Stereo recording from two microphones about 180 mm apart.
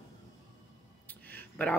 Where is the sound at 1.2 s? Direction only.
10° left (ahead or behind).